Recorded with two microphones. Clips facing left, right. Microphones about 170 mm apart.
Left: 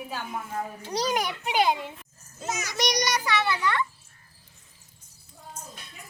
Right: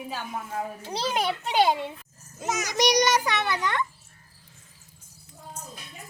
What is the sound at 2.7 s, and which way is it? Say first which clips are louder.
A child's voice: right 6 dB; 15° right (ahead or behind).